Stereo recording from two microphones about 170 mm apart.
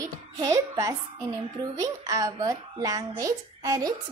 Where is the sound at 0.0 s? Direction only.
20° right (ahead or behind).